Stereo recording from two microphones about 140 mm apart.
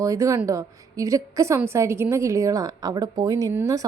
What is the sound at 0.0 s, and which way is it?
Speech, 25° right (ahead or behind).